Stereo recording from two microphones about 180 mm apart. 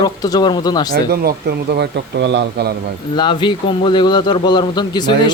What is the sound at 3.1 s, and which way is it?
A man's voice, 25° left (ahead or behind).